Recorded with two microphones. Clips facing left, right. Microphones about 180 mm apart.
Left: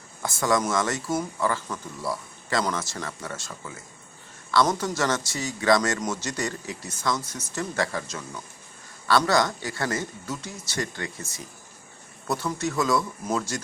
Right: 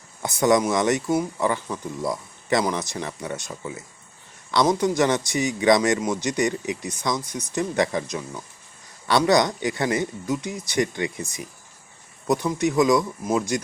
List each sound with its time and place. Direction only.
0.2 s speech: 20° right (ahead or behind)